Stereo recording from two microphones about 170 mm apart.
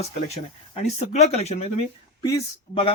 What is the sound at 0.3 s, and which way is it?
Speech, 40° left (ahead or behind).